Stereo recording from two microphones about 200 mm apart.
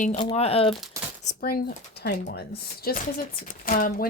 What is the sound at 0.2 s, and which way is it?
Speech, 30° left (ahead or behind).